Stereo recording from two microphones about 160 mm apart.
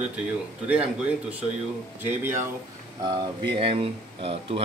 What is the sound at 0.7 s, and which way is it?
A man's voice, 10° right (ahead or behind).